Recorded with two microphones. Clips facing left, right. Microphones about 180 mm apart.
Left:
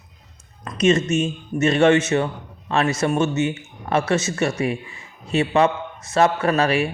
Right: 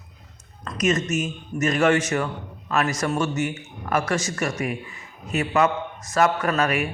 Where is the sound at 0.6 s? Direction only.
30° left (ahead or behind).